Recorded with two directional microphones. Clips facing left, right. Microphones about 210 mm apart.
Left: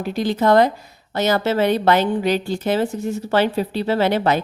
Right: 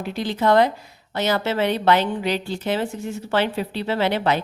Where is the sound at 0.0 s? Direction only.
45° left (ahead or behind).